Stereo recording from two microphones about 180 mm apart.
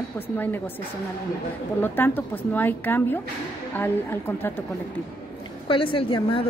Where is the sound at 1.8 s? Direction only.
10° left (ahead or behind).